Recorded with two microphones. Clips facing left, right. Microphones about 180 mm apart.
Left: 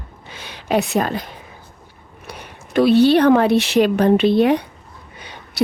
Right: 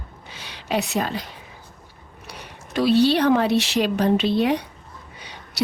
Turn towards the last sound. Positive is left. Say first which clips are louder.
# left 6 dB
turn(degrees=55)  # may be behind; listen again after turning